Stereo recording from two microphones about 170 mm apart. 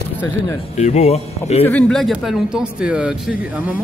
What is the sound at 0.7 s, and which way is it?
Speech, 40° left (ahead or behind).